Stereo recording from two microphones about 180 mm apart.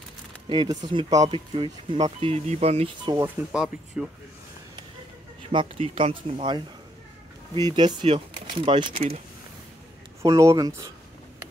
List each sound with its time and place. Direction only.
0.5 s speech: 25° right (ahead or behind)
3.5 s speech: 5° right (ahead or behind)
5.5 s speech: 30° right (ahead or behind)
7.7 s speech: 25° right (ahead or behind)
10.2 s speech: 20° right (ahead or behind)